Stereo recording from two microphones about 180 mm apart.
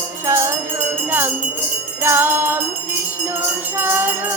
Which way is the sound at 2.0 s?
10° right (ahead or behind).